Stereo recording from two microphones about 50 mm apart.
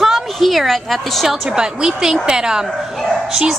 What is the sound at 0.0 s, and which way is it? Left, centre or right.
A woman's voice, centre.